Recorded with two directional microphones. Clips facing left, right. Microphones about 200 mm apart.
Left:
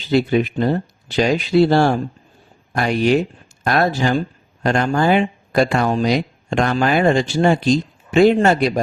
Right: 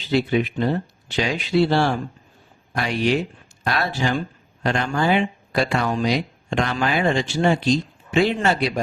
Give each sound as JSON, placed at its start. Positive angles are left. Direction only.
{"t": 0.1, "sound": "speech", "side_deg": 45}